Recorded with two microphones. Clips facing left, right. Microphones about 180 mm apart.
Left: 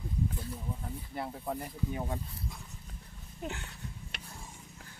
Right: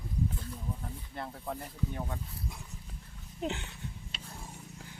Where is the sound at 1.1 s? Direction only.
10° left (ahead or behind).